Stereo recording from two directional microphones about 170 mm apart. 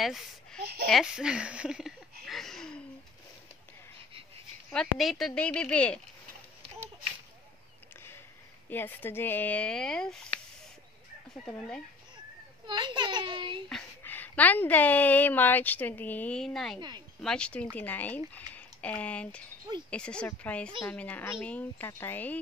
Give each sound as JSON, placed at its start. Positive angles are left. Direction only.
{"t": 0.0, "sound": "speech", "side_deg": 0}
{"t": 0.6, "sound": "a sound", "side_deg": -70}
{"t": 0.8, "sound": "a woman's voice", "side_deg": 0}
{"t": 2.2, "sound": "a sound", "side_deg": 0}
{"t": 4.6, "sound": "a woman's voice", "side_deg": 0}
{"t": 8.6, "sound": "a woman's voice", "side_deg": 10}
{"t": 12.6, "sound": "speech", "side_deg": -25}
{"t": 13.7, "sound": "a woman's voice", "side_deg": 5}